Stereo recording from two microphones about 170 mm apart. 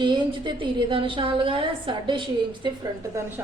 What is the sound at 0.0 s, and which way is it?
A woman's voice, 30° right (ahead or behind).